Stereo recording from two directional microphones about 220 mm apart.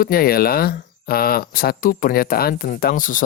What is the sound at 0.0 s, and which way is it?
Speech, 45° left (ahead or behind).